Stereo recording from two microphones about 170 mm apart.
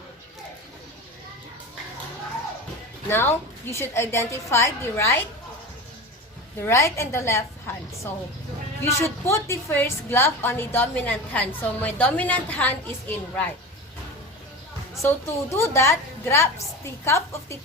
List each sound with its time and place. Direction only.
3.1 s a woman's voice: 15° left (ahead or behind)
6.6 s a woman's voice: 15° left (ahead or behind)
15.0 s a woman's voice: 15° left (ahead or behind)